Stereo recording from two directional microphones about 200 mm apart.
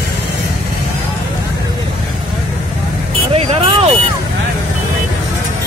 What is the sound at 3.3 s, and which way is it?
Vehicle, 30° right (ahead or behind).